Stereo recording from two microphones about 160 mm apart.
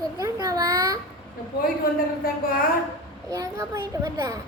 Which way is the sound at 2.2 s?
65° left (ahead or behind).